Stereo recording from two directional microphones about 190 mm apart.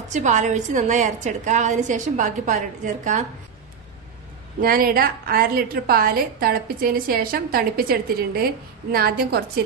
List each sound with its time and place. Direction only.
0.1 s a woman's voice: 40° right (ahead or behind)
4.6 s a woman's voice: 50° right (ahead or behind)